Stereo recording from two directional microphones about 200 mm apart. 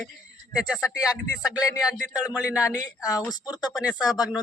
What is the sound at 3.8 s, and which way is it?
Speech, 5° right (ahead or behind).